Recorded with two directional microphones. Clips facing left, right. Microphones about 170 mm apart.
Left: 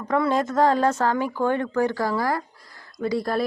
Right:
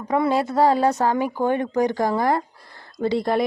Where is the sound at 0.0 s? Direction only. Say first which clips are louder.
Right 1 dB; 10° right (ahead or behind).